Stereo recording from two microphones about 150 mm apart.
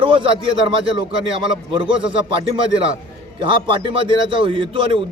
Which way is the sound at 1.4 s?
35° right (ahead or behind).